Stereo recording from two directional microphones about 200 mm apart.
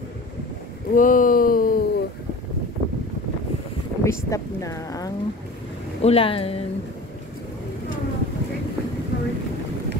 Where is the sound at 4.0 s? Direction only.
15° left (ahead or behind).